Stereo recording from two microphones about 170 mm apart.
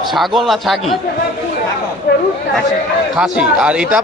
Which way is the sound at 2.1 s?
70° left (ahead or behind).